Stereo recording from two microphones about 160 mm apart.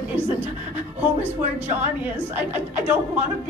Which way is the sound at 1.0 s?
10° right (ahead or behind).